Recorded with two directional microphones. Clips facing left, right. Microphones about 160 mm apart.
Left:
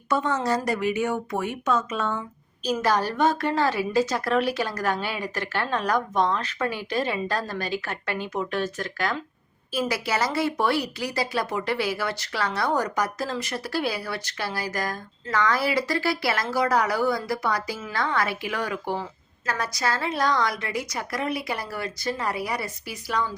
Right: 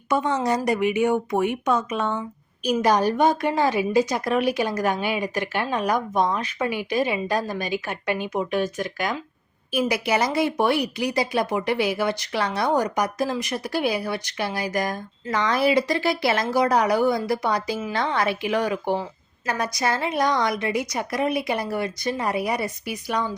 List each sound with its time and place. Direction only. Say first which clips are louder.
0.1 s a woman's voice: right 2 dB; 15° right (ahead or behind)